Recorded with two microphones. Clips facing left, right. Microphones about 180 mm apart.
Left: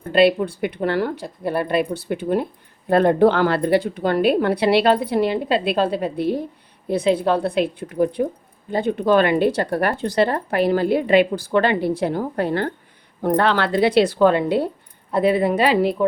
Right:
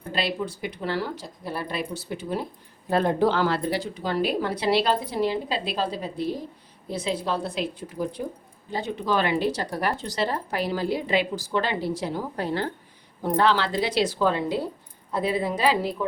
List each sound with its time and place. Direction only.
0.1 s speech: 60° left (ahead or behind)